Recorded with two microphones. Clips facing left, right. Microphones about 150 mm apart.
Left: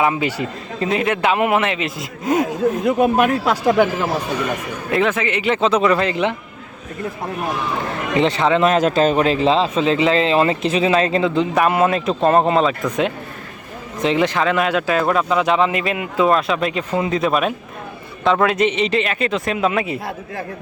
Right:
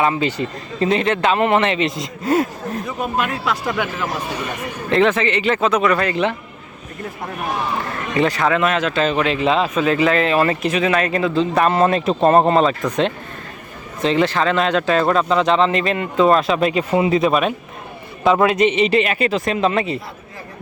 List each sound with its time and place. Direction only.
0.0 s speech: 15° left (ahead or behind)
2.2 s speech: 15° left (ahead or behind)
3.2 s speech: 45° left (ahead or behind)
4.9 s speech: 5° left (ahead or behind)
5.5 s speech: 25° left (ahead or behind)
8.2 s speech: 25° left (ahead or behind)
11.5 s a man's voice: 10° left (ahead or behind)
14.0 s a man's voice: 15° left (ahead or behind)